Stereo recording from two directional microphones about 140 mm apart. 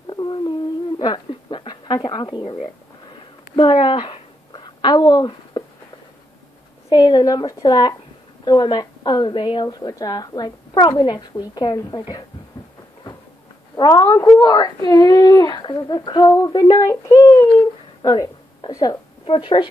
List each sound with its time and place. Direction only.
0.0 s a sound: 30° left (ahead or behind)
6.9 s a woman's voice: 30° left (ahead or behind)
13.7 s a woman's voice: 30° left (ahead or behind)
19.2 s a woman's voice: 35° left (ahead or behind)